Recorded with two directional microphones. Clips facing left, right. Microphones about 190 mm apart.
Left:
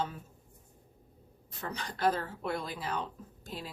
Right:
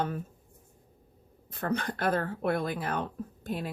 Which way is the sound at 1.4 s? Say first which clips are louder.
Right 9 dB; 55° right (ahead or behind).